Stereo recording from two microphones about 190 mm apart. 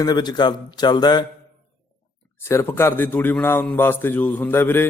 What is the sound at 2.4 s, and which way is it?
A man's voice, 10° left (ahead or behind).